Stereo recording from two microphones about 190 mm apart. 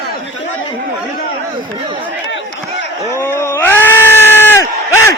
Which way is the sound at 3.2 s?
10° left (ahead or behind).